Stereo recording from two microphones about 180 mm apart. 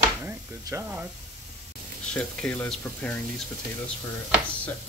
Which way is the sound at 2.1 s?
10° left (ahead or behind).